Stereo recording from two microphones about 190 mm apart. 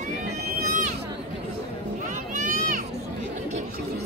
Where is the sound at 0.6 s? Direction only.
40° right (ahead or behind).